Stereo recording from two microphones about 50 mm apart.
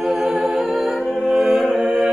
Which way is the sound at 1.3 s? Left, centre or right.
Centre.